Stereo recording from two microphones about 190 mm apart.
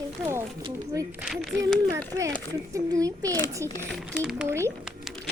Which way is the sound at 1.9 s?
15° right (ahead or behind).